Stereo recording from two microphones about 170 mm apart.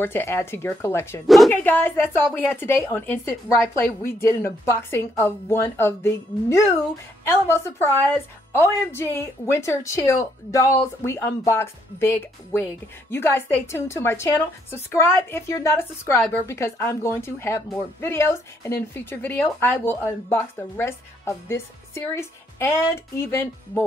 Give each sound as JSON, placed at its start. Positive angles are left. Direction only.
{"t": 0.0, "sound": "speech", "side_deg": 15}
{"t": 1.2, "sound": "speech", "side_deg": 0}
{"t": 1.5, "sound": "speech", "side_deg": 10}